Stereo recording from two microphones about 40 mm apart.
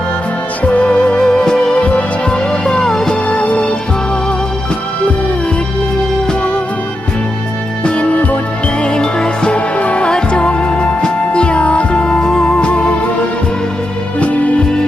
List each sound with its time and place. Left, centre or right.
0.6 s music: left
1.8 s music: left
2.3 s music: left
3.2 s music: left
7.9 s music: left
8.8 s music: left
9.6 s music: left
10.1 s music: left
14.2 s music: left